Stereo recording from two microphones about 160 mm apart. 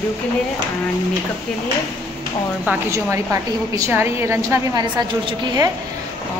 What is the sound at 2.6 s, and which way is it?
A woman's voice, 20° right (ahead or behind).